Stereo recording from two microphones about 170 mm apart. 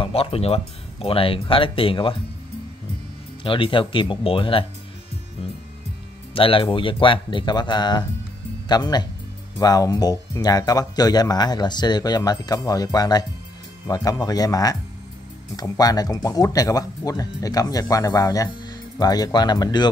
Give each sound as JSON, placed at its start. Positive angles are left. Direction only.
{"t": 0.0, "sound": "speech", "side_deg": 35}
{"t": 3.4, "sound": "speech", "side_deg": 30}
{"t": 6.3, "sound": "speech", "side_deg": 30}